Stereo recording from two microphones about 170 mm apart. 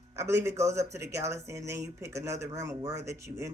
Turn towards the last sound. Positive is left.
turn(degrees=-15)  # may be behind; listen again after turning